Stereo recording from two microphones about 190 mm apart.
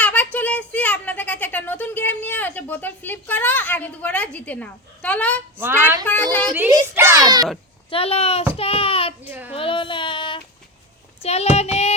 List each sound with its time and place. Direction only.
0.0 s a sound: 10° left (ahead or behind)
5.5 s speech: 10° right (ahead or behind)
6.1 s speech: 10° left (ahead or behind)
6.5 s speech: 10° right (ahead or behind)
7.9 s child singing: 30° left (ahead or behind)
9.2 s speech: 10° right (ahead or behind)
9.6 s child singing: 25° left (ahead or behind)